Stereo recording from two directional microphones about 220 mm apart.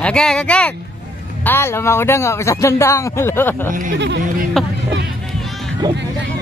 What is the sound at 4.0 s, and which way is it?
Speech, 55° right (ahead or behind).